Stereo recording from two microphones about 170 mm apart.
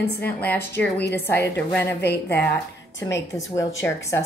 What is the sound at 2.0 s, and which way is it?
Speech, 75° left (ahead or behind).